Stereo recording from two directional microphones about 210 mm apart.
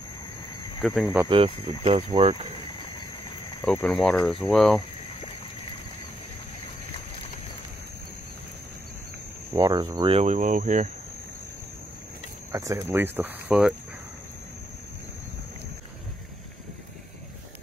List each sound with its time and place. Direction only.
1.0 s speech: 10° right (ahead or behind)
1.3 s speech: 25° right (ahead or behind)
3.6 s speech: 5° left (ahead or behind)
9.5 s speech: 15° right (ahead or behind); by 10.9 s 35° right (ahead or behind)
12.5 s speech: 15° right (ahead or behind)